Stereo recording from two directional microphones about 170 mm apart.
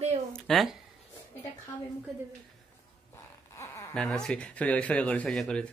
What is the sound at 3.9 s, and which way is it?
Speech, 5° left (ahead or behind).